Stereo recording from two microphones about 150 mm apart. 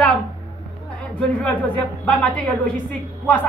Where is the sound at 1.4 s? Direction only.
10° left (ahead or behind).